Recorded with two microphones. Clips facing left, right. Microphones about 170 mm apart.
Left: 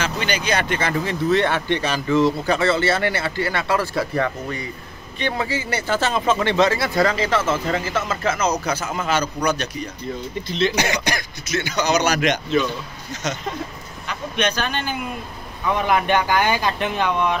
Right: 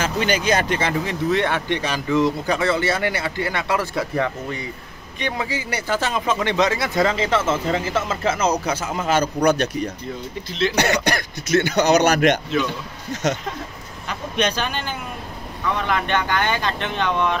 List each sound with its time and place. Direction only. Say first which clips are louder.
0.0 s speech: right 3 dB; 45° right (ahead or behind)
0.7 s speech: even; 20° right (ahead or behind)
9.0 s speech: right 4 dB; 50° right (ahead or behind)
14.0 s a man's voice: right 1 dB; 35° right (ahead or behind)
15.7 s speech: left 4 dB; 10° left (ahead or behind)